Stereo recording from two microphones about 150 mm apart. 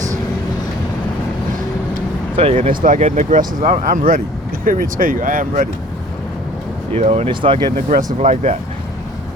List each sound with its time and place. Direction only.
2.3 s speech: 40° right (ahead or behind)
2.6 s speech: 60° right (ahead or behind)
6.9 s speech: 45° right (ahead or behind)
8.2 s speech: 50° right (ahead or behind)